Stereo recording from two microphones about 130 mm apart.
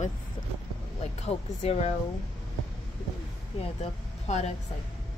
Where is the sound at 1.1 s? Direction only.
55° left (ahead or behind).